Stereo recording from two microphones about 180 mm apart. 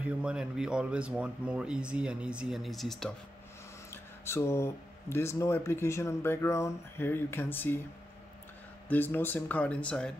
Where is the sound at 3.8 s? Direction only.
15° left (ahead or behind).